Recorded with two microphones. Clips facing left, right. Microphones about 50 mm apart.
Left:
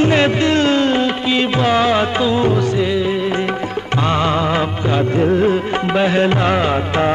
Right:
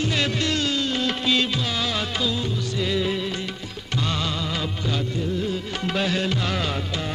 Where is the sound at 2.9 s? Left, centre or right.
Centre.